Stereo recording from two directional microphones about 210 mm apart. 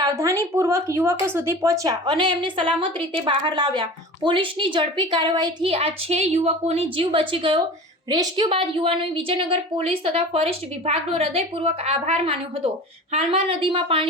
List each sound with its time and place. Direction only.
0.0 s a woman's voice: 15° right (ahead or behind)